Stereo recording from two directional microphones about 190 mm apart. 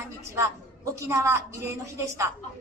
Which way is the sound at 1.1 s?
15° right (ahead or behind).